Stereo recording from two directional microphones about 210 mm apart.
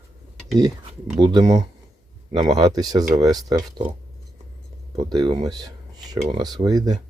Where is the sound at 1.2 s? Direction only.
20° right (ahead or behind).